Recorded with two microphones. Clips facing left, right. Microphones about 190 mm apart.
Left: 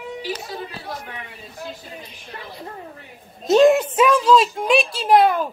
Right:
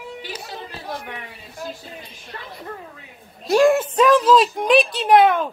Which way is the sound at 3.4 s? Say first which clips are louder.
Left 2 dB; 20° left (ahead or behind).